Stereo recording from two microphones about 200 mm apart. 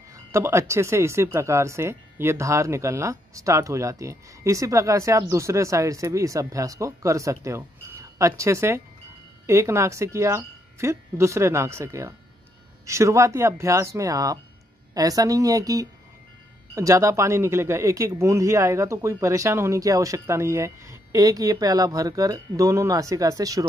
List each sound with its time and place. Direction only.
0.1 s speech: 15° right (ahead or behind)